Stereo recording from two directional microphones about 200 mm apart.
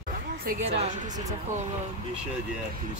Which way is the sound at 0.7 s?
30° right (ahead or behind).